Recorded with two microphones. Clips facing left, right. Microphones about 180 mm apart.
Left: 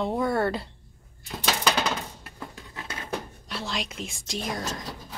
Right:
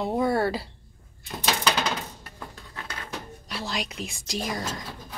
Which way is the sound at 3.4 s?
Centre (ahead or behind).